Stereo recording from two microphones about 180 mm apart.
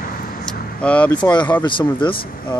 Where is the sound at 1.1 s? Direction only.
25° left (ahead or behind).